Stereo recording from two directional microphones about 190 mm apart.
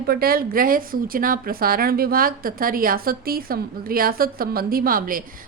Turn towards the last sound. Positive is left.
turn(degrees=-50)  # may be behind; listen again after turning